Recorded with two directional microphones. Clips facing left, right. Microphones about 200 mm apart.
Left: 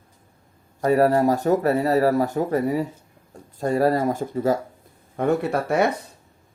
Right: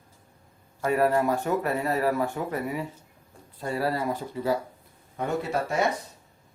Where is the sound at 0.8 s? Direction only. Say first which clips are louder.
Left 5 dB; 40° left (ahead or behind).